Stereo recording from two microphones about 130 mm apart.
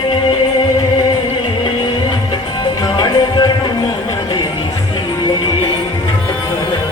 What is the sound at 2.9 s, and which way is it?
Music, 35° left (ahead or behind).